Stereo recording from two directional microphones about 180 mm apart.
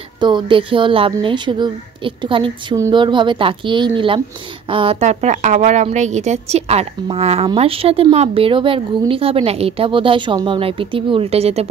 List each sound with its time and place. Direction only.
0.2 s a woman's voice: 25° right (ahead or behind)